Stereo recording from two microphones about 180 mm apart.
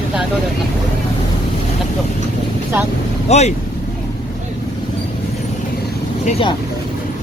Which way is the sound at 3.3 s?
35° left (ahead or behind).